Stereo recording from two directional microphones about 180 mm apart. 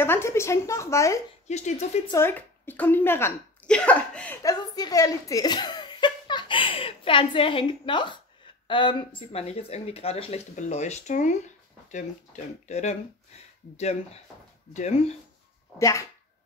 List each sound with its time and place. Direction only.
0.0 s a woman's voice: 15° left (ahead or behind)
1.5 s speech: 40° left (ahead or behind)
2.1 s a woman's voice: 10° left (ahead or behind)
4.4 s speech: 20° left (ahead or behind); by 12.9 s 40° left (ahead or behind)
14.7 s speech: 40° left (ahead or behind)
15.8 s a woman's voice: 15° left (ahead or behind)